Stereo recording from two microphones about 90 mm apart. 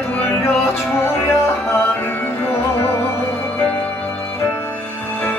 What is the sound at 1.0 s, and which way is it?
Music, 25° left (ahead or behind).